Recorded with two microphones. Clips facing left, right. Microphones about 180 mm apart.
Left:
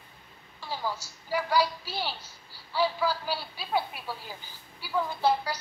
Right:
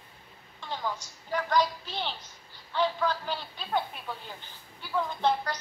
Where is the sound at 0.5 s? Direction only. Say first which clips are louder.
Left 1 dB; 5° left (ahead or behind).